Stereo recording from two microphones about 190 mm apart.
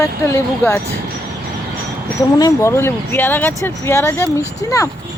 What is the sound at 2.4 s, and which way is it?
Speech, 15° left (ahead or behind).